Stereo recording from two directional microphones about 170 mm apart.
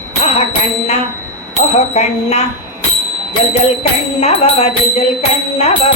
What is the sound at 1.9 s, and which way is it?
Music, 40° left (ahead or behind).